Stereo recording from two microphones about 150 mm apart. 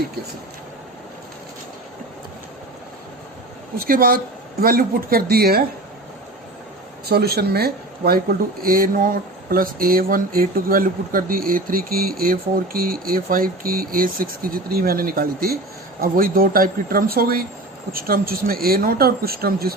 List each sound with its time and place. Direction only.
3.8 s speech: 75° right (ahead or behind); by 5.6 s 90° right
7.1 s speech: 90° right